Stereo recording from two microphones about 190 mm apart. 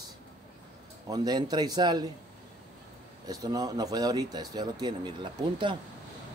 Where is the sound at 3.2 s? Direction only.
20° right (ahead or behind).